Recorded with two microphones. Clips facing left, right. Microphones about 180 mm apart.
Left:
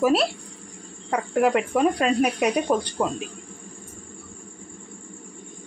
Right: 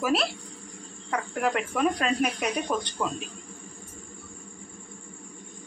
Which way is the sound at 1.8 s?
35° left (ahead or behind).